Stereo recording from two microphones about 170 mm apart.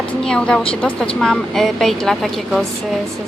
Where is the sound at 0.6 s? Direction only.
35° left (ahead or behind).